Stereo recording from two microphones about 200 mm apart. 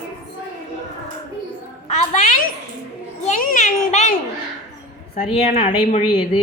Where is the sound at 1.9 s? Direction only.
35° left (ahead or behind).